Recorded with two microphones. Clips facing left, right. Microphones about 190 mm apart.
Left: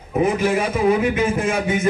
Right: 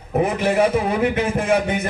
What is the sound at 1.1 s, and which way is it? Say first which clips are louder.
Speech: even; 60° right (ahead or behind).